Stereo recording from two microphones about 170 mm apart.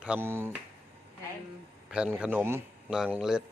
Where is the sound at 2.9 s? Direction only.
5° right (ahead or behind).